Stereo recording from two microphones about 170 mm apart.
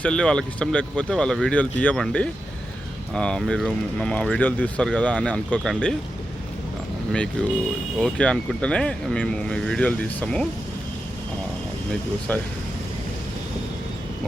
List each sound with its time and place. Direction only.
0.0 s speech: 5° left (ahead or behind)
7.1 s speech: 5° left (ahead or behind)
12.3 s speech: 10° left (ahead or behind)